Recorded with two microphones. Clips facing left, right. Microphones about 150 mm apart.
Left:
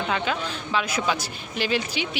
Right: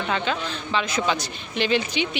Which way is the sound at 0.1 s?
5° left (ahead or behind).